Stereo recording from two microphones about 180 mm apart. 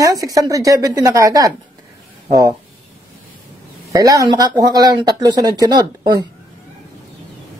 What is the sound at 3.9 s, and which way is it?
Speech, 20° right (ahead or behind).